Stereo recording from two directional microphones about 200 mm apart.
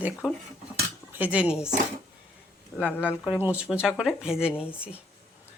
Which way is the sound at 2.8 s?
10° left (ahead or behind).